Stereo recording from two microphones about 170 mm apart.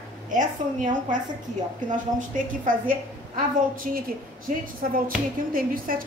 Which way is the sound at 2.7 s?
55° right (ahead or behind).